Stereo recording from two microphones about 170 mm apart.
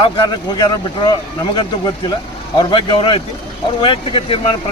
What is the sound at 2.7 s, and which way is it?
Speech, 30° left (ahead or behind).